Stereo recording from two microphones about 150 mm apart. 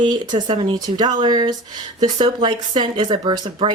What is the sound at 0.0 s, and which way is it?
Speech, 30° right (ahead or behind).